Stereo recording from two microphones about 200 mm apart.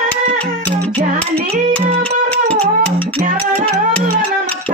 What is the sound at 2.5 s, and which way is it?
Music, 5° left (ahead or behind).